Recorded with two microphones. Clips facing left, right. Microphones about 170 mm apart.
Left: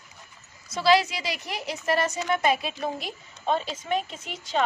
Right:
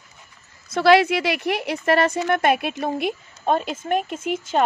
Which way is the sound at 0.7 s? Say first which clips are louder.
Right 6 dB; 60° right (ahead or behind).